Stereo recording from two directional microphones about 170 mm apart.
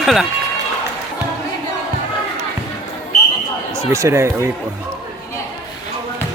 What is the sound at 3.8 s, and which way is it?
Speech, 15° right (ahead or behind).